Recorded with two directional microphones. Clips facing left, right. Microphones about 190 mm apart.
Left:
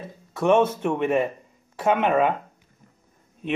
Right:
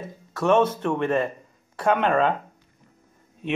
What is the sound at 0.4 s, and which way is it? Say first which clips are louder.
Speech: left 1 dB; 10° left (ahead or behind).